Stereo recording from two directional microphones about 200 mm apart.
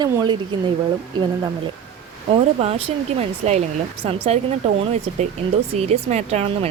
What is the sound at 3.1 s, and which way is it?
Speech, 35° right (ahead or behind).